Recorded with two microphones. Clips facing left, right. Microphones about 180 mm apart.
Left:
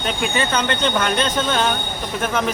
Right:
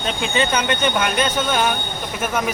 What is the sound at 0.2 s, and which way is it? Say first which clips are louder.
Speech: right 1 dB; 15° right (ahead or behind).